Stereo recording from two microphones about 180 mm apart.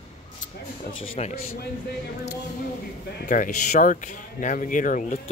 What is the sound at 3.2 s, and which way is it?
Speech, 45° left (ahead or behind).